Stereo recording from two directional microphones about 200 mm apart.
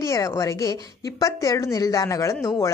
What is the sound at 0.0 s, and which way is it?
A woman's voice, 15° left (ahead or behind).